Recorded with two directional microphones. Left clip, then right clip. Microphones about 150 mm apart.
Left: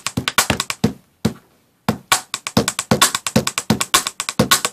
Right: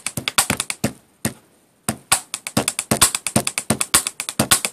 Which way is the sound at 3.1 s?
Centre (ahead or behind).